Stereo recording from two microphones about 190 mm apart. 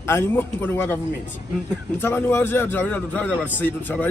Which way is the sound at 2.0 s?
10° left (ahead or behind).